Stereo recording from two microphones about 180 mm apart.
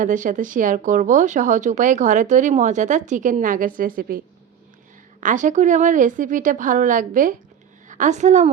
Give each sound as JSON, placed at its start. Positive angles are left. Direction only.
{"t": 0.0, "sound": "speech", "side_deg": -45}
{"t": 5.2, "sound": "a woman's voice", "side_deg": -45}